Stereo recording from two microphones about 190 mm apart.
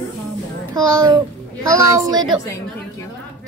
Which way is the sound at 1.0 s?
20° right (ahead or behind).